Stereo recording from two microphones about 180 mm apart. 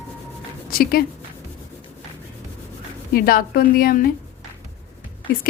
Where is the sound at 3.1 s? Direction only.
55° left (ahead or behind).